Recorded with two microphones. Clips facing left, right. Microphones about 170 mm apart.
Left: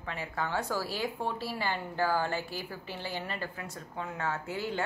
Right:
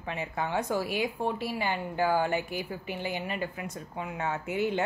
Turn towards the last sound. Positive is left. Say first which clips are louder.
# right 5 dB
turn(degrees=-20)  # may be behind; listen again after turning